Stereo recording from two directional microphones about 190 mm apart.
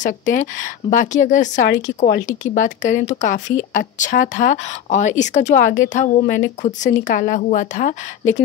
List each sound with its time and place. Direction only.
0.0 s a woman's voice: 40° left (ahead or behind)